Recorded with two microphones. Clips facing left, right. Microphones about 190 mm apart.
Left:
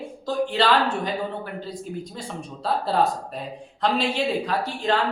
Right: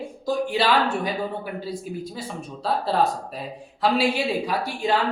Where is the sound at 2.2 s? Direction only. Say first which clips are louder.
Right 1 dB; centre (ahead or behind).